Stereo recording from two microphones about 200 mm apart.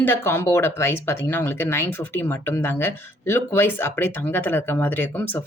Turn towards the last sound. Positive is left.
turn(degrees=10)  # may be behind; listen again after turning